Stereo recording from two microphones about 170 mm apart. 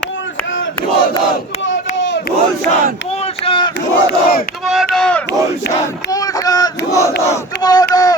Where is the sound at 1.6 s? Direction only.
90° left.